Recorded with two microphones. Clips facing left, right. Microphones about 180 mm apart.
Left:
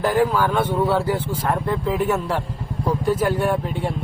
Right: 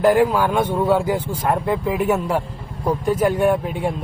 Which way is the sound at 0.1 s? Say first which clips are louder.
Right 2 dB; 10° right (ahead or behind).